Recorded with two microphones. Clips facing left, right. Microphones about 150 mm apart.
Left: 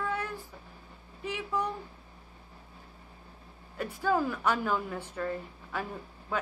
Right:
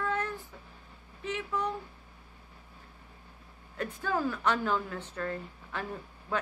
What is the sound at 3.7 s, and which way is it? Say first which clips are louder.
A woman's voice: left 3 dB; 10° left (ahead or behind).